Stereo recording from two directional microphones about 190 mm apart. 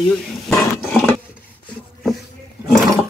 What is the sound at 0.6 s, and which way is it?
Roar, centre (ahead or behind).